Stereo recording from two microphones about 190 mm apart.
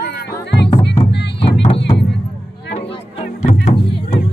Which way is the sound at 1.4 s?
30° left (ahead or behind).